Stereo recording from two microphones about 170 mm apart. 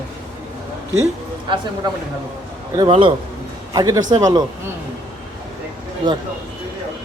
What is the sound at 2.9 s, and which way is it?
Speech, 30° right (ahead or behind).